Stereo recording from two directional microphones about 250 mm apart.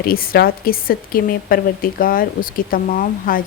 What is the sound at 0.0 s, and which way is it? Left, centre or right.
A woman's voice, left.